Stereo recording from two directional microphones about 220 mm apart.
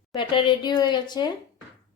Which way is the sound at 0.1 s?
20° left (ahead or behind).